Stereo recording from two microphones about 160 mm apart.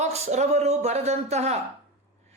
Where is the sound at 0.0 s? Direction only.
45° right (ahead or behind).